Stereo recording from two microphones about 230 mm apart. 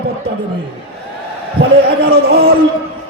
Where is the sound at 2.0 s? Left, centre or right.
Right.